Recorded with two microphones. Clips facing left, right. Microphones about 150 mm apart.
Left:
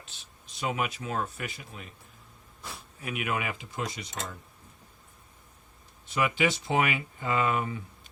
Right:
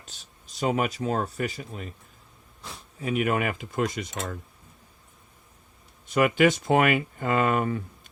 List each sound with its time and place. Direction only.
0.0 s speech: 40° right (ahead or behind)
3.0 s speech: 30° right (ahead or behind)
3.2 s speech: 50° right (ahead or behind)
6.1 s speech: 50° right (ahead or behind)